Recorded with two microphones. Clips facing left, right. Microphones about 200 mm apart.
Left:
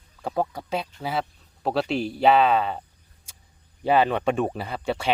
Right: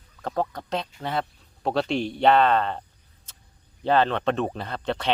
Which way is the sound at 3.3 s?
10° left (ahead or behind).